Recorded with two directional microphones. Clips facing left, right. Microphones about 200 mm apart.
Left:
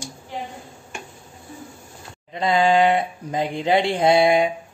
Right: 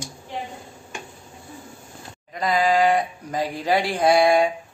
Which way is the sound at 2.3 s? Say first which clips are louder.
Left 2 dB; 25° left (ahead or behind).